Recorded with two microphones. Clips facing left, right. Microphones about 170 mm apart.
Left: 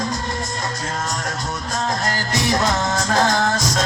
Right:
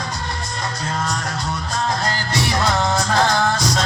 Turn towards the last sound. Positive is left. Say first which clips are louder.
# right 1 dB
turn(degrees=45)  # may be behind; listen again after turning